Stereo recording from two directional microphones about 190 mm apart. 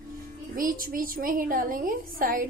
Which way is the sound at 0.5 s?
50° right (ahead or behind).